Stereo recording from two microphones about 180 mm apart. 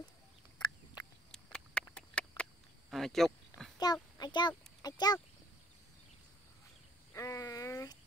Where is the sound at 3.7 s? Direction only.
20° left (ahead or behind).